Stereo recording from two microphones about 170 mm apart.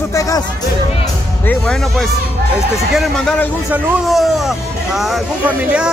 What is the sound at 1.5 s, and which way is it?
Speech, 5° left (ahead or behind).